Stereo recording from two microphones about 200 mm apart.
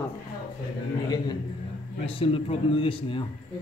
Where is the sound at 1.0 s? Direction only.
20° left (ahead or behind).